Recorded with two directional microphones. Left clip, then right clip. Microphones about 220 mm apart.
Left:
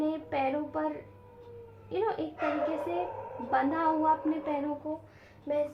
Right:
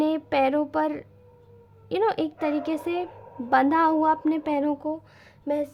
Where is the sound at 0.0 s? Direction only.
45° right (ahead or behind).